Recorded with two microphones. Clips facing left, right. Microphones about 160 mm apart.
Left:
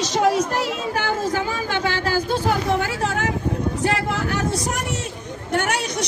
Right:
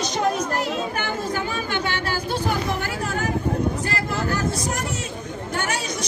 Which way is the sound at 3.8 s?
75° left (ahead or behind).